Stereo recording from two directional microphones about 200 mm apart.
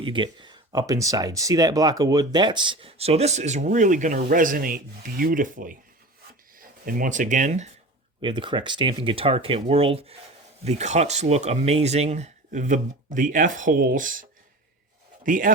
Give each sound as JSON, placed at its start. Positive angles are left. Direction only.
{"t": 0.0, "sound": "speech", "side_deg": -25}
{"t": 8.2, "sound": "a man's voice", "side_deg": -25}